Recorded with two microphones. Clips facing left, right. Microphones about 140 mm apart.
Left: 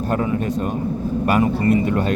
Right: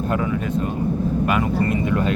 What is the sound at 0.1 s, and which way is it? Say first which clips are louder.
Speech: left 3 dB; 40° left (ahead or behind).